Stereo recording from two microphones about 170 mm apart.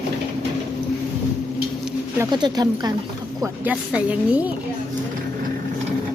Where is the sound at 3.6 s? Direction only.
5° right (ahead or behind).